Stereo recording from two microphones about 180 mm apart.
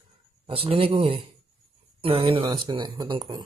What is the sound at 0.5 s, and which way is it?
Speech, 30° right (ahead or behind).